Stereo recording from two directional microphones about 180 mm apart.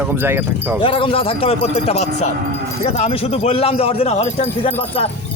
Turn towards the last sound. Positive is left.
turn(degrees=30)  # may be behind; listen again after turning